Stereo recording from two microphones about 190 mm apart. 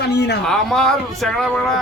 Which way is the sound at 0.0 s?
60° left (ahead or behind).